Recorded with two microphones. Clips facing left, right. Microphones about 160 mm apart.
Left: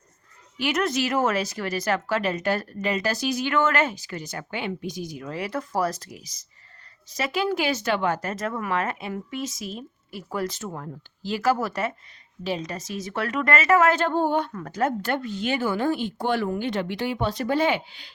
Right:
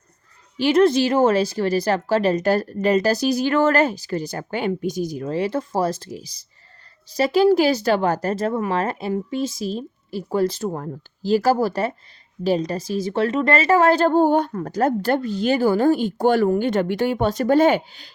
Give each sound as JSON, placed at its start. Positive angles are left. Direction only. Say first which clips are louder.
{"t": 0.5, "sound": "a woman's voice", "louder": "right 9 dB", "side_deg": -30}